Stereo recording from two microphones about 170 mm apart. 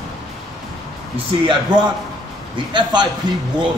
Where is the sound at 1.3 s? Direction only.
30° right (ahead or behind).